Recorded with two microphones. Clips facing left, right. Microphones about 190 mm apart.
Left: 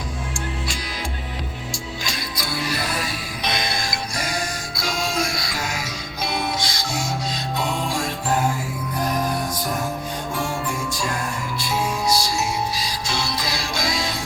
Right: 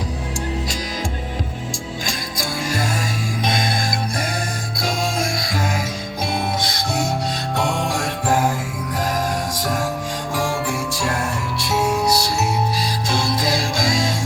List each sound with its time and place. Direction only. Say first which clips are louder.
2.0 s music: right 2 dB; 45° right (ahead or behind)
4.8 s music: right 2 dB; 50° right (ahead or behind)
7.5 s music: right 3 dB; 70° right (ahead or behind)
10.3 s music: right 5 dB; 90° right; by 14.1 s 45° right (ahead or behind)